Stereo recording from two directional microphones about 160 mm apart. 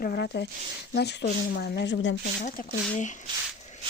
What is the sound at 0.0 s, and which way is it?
Speech, 80° left.